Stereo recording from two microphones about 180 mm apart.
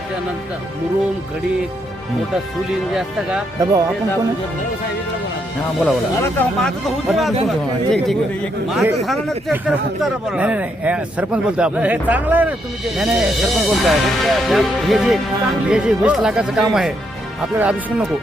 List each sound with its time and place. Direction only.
2.9 s speech: centre (ahead or behind)
3.6 s speech: 20° right (ahead or behind)
5.8 s a man's voice: 10° left (ahead or behind); by 18.0 s 10° right (ahead or behind)